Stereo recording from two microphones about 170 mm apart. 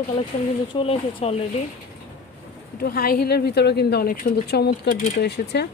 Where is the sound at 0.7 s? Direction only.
30° left (ahead or behind).